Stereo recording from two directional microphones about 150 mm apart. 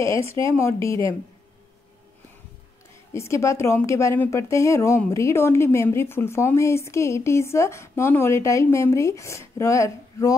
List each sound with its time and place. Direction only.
0.0 s speech: 20° left (ahead or behind)
3.1 s speech: 20° left (ahead or behind)